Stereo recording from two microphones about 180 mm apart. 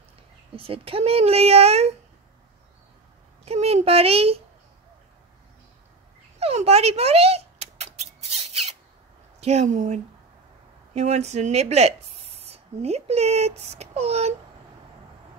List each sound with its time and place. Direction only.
0.6 s speech: 30° right (ahead or behind)
3.4 s a child's voice: 35° right (ahead or behind)
6.4 s mouse: 35° right (ahead or behind)
9.4 s speech: 40° right (ahead or behind)